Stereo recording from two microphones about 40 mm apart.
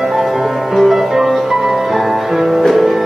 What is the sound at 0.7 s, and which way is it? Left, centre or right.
Music, centre.